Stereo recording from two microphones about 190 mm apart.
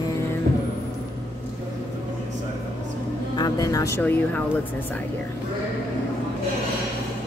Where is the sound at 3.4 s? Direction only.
20° left (ahead or behind).